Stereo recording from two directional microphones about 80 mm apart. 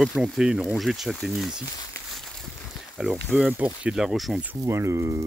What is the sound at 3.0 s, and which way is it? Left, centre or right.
Speech, centre.